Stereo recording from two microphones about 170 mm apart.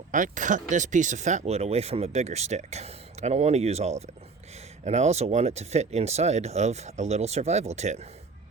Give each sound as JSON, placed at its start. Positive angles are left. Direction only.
{"t": 0.1, "sound": "speech", "side_deg": -50}